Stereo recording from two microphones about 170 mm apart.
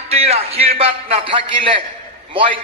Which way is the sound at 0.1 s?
35° right (ahead or behind).